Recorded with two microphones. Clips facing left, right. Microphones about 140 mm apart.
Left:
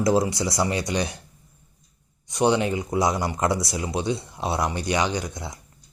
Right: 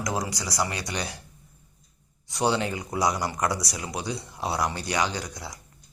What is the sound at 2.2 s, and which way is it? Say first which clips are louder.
Speech: left 4 dB; 20° left (ahead or behind).